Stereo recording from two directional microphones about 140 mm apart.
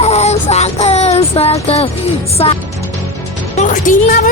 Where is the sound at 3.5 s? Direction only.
65° left (ahead or behind).